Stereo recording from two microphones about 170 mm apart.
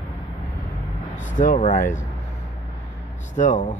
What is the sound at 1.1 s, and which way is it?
Speech, 50° left (ahead or behind).